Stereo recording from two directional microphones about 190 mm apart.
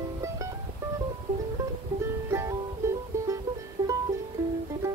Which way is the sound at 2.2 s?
15° right (ahead or behind).